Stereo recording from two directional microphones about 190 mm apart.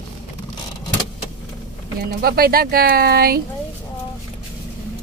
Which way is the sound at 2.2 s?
55° right (ahead or behind).